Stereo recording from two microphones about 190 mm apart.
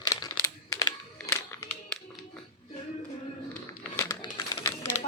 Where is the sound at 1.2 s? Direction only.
10° left (ahead or behind).